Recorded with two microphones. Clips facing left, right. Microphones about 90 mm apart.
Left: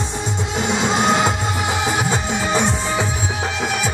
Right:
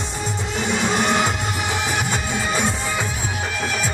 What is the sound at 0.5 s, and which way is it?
Music, 20° left (ahead or behind).